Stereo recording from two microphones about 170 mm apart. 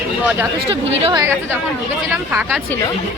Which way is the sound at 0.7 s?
30° right (ahead or behind).